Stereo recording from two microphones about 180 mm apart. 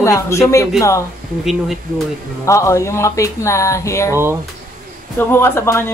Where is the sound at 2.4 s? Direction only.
15° left (ahead or behind).